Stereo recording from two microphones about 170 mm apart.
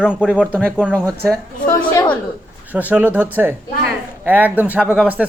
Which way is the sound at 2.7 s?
10° right (ahead or behind).